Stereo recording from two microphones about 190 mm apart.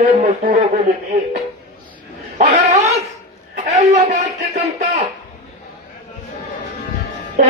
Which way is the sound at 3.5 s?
35° right (ahead or behind).